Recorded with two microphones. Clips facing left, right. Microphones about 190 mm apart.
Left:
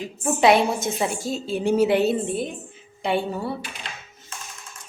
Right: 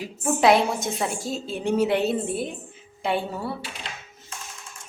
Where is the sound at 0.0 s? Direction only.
Centre (ahead or behind).